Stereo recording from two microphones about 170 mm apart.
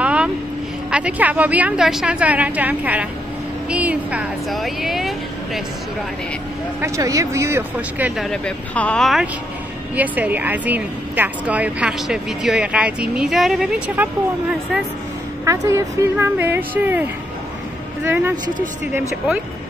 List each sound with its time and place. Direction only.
0.0 s vehicle: 5° right (ahead or behind)
0.8 s speech: 5° right (ahead or behind)
6.8 s speech: 20° right (ahead or behind)
8.3 s speech: 5° left (ahead or behind)
15.4 s speech: 20° right (ahead or behind)